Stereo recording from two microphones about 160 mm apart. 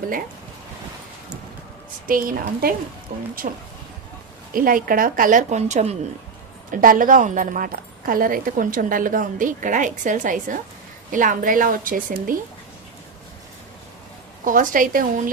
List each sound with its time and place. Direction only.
2.0 s a woman's voice: 60° right (ahead or behind)
4.5 s a woman's voice: 60° right (ahead or behind); by 6.0 s 45° right (ahead or behind)
6.7 s a woman's voice: 60° right (ahead or behind)
14.4 s a woman's voice: 55° right (ahead or behind)